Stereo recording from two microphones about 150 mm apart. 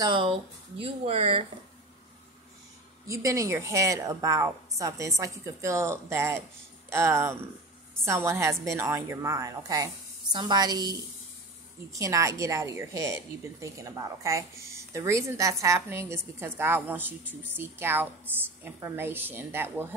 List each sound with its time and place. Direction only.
0.0 s speech: 35° right (ahead or behind)
3.1 s a woman's voice: 20° right (ahead or behind)